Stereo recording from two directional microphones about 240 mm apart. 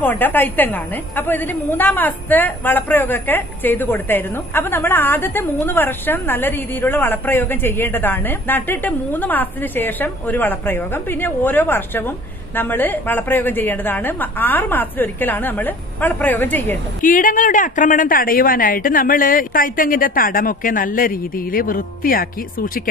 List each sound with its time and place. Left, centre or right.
0.0 s a woman's voice: centre
17.0 s a woman's voice: left